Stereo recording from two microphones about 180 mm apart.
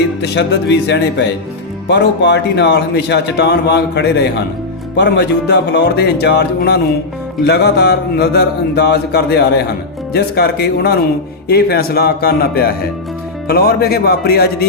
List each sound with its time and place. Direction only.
0.2 s speech: 70° left (ahead or behind)